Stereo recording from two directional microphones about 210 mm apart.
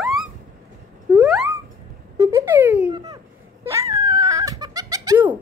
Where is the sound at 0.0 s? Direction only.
Centre (ahead or behind).